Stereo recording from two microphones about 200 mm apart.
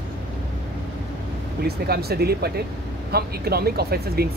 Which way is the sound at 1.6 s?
50° right (ahead or behind).